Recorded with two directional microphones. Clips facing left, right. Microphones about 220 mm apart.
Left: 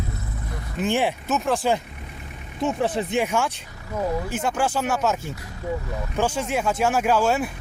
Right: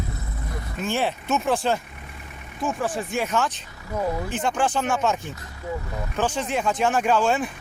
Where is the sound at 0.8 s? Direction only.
15° left (ahead or behind).